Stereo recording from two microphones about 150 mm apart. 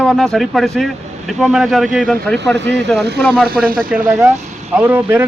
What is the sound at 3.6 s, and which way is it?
Speech, 70° right (ahead or behind).